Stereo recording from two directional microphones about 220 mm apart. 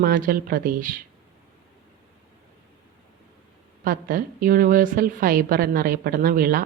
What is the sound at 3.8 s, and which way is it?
A woman's voice, 40° right (ahead or behind).